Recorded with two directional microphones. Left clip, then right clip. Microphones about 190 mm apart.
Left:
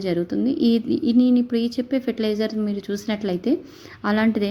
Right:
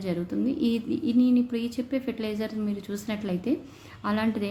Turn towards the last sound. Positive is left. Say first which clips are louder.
# left 7 dB
turn(degrees=35)  # may be behind; listen again after turning